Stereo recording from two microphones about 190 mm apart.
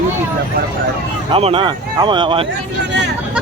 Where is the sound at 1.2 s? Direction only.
30° right (ahead or behind).